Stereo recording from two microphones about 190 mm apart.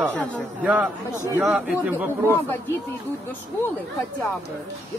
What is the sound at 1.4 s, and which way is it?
Speech, 5° right (ahead or behind).